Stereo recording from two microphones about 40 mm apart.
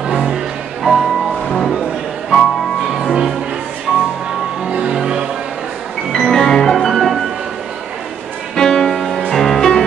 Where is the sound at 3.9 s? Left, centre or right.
Centre.